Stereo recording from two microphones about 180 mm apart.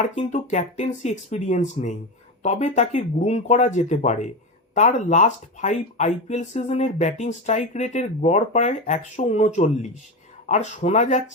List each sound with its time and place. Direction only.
0.2 s speech: 40° left (ahead or behind)